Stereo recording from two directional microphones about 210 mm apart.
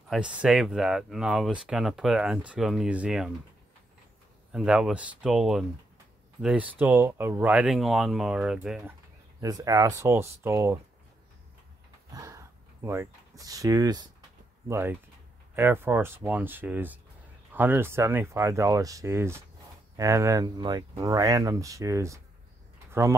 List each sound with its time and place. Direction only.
0.1 s speech: 5° right (ahead or behind)
4.5 s speech: 5° right (ahead or behind)
9.4 s speech: 15° right (ahead or behind)
12.1 s a sound: 15° right (ahead or behind)
13.4 s speech: 15° right (ahead or behind)